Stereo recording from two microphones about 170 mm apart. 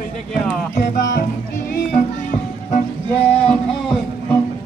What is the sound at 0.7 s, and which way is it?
Music, 60° left (ahead or behind).